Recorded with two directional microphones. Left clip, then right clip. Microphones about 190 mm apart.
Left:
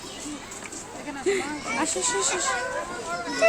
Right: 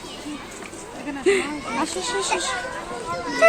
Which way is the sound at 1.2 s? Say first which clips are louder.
Right 6 dB; 5° left (ahead or behind).